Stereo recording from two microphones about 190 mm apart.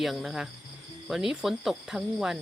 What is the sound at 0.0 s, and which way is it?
Speech, centre (ahead or behind).